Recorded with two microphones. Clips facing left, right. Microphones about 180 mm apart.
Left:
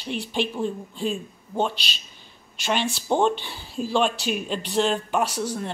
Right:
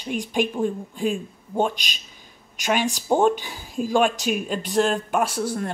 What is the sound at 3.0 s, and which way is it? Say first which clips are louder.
A woman's voice: right 3 dB; 10° right (ahead or behind).